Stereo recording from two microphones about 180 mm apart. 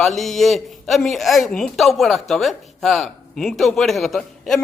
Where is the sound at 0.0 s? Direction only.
Centre (ahead or behind).